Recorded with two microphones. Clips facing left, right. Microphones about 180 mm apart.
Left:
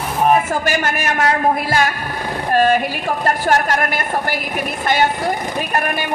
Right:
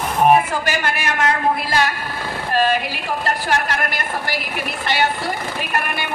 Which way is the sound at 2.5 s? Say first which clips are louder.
Left 4 dB; 50° left (ahead or behind).